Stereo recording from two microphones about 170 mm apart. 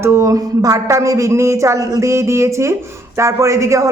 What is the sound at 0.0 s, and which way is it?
Speech, 15° right (ahead or behind).